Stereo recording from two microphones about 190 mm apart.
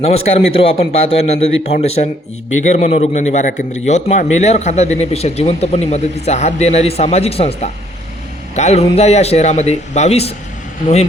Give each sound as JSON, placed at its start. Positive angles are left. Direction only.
{"t": 0.0, "sound": "a man's voice", "side_deg": 30}